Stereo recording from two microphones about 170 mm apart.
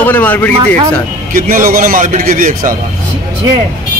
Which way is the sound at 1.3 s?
55° right (ahead or behind).